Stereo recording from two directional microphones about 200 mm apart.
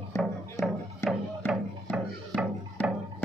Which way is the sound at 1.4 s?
10° left (ahead or behind).